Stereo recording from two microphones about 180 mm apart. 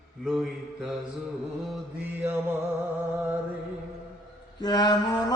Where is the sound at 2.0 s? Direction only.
15° right (ahead or behind).